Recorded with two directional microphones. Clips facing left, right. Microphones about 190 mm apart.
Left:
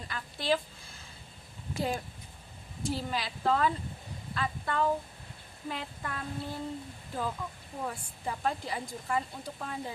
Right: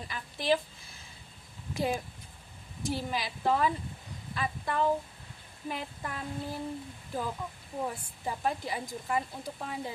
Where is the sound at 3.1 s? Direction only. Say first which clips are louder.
Even; 10° right (ahead or behind).